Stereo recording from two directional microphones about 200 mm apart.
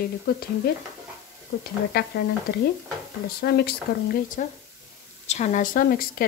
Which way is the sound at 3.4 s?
50° left (ahead or behind).